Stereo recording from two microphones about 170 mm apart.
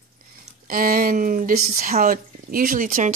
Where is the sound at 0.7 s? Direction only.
55° right (ahead or behind).